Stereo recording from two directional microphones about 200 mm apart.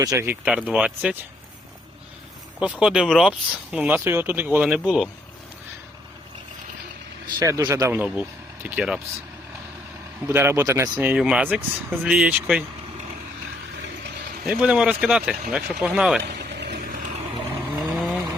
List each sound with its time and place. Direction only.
0.0 s speech: 15° right (ahead or behind)
0.4 s speech: 5° right (ahead or behind)
2.6 s speech: 5° right (ahead or behind)
7.3 s speech: 20° right (ahead or behind)
10.2 s speech: 10° right (ahead or behind)
11.1 s speech: 5° right (ahead or behind)
14.4 s speech: 5° right (ahead or behind)
16.2 s a sound: 55° right (ahead or behind)
17.6 s vehicle: 5° right (ahead or behind)